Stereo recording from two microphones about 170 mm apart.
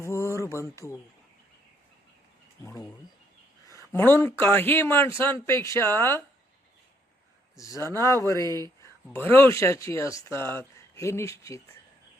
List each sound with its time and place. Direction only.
0.0 s a sound: 15° left (ahead or behind)
3.9 s a man's voice: 15° left (ahead or behind)
7.5 s a man's voice: 20° left (ahead or behind)